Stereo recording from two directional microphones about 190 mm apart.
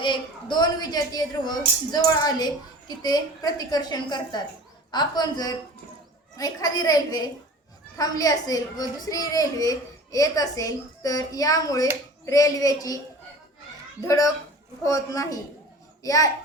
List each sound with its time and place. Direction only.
0.0 s a woman's voice: 25° left (ahead or behind)
14.8 s speech: 20° left (ahead or behind)